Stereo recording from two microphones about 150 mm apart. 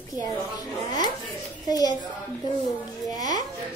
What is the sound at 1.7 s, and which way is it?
Speech, 25° left (ahead or behind).